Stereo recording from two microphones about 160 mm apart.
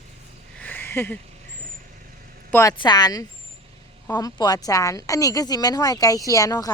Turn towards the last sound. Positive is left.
turn(degrees=20)  # may be behind; listen again after turning